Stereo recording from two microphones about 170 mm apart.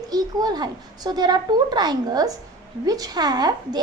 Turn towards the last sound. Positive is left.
turn(degrees=-25)  # may be behind; listen again after turning